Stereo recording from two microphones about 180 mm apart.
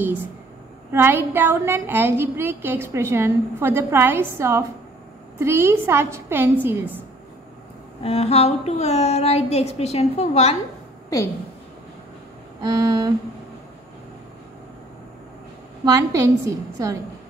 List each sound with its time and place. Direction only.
0.9 s a woman's voice: 10° right (ahead or behind)
8.0 s a woman's voice: 35° left (ahead or behind)
12.6 s a sound: 20° right (ahead or behind)
15.8 s a woman's voice: 15° right (ahead or behind)